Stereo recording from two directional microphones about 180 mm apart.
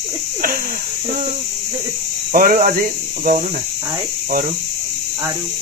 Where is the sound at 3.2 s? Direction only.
50° right (ahead or behind).